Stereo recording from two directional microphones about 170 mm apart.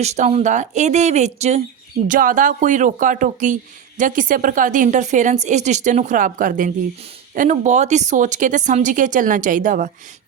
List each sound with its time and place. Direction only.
0.0 s speech: 40° right (ahead or behind)
2.0 s speech: 50° right (ahead or behind)